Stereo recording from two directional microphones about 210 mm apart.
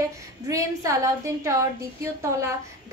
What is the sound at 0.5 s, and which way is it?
A woman's voice, 15° right (ahead or behind).